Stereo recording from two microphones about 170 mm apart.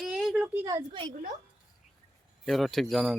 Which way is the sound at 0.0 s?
Centre (ahead or behind).